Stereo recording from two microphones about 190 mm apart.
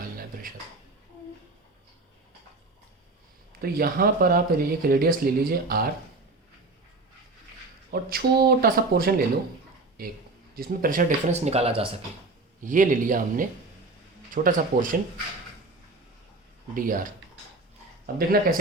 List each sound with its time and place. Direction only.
3.6 s speech: 55° right (ahead or behind)
7.9 s speech: 55° right (ahead or behind); by 11.9 s 30° right (ahead or behind)
12.6 s speech: 45° right (ahead or behind)
16.7 s speech: 45° right (ahead or behind)